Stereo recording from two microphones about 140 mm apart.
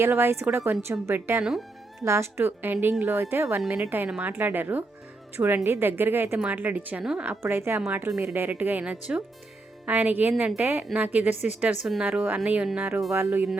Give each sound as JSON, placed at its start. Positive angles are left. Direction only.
{"t": 0.0, "sound": "a woman's voice", "side_deg": -15}
{"t": 1.5, "sound": "music", "side_deg": 0}
{"t": 2.0, "sound": "a woman's voice", "side_deg": -20}